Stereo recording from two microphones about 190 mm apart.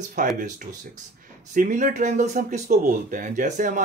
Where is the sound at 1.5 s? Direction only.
45° right (ahead or behind).